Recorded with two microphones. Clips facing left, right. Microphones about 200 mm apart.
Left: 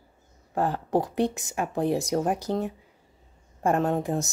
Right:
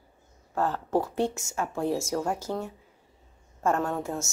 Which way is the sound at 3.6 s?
20° left (ahead or behind).